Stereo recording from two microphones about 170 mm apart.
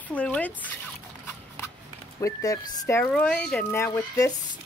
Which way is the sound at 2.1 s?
20° left (ahead or behind).